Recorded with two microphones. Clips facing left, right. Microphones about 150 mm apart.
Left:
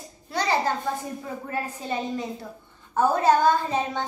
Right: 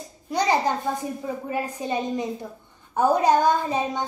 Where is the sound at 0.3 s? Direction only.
15° right (ahead or behind).